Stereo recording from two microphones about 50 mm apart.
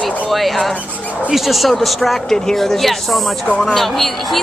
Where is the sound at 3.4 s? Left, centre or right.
Left.